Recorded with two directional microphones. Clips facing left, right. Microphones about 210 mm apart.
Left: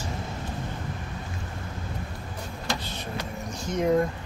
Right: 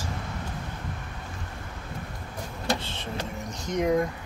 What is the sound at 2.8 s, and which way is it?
Vehicle, 25° right (ahead or behind).